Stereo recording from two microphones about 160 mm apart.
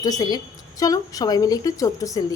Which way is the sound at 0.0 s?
25° left (ahead or behind).